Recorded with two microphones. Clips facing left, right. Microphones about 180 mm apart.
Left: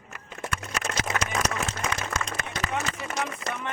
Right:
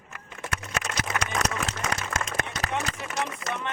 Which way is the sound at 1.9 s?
45° right (ahead or behind).